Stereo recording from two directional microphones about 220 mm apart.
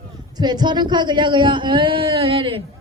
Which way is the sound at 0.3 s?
20° right (ahead or behind).